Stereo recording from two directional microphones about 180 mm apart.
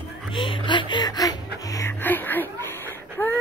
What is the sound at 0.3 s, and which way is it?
Speech, 25° left (ahead or behind).